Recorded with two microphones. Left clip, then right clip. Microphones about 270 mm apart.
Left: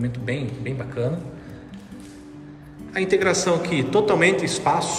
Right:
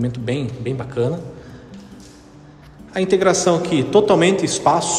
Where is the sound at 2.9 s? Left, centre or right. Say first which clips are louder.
Right 4 dB; centre.